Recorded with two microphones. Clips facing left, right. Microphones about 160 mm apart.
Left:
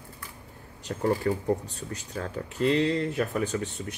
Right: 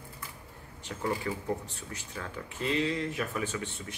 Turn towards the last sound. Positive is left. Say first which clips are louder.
# left 6 dB
turn(degrees=40)  # may be behind; listen again after turning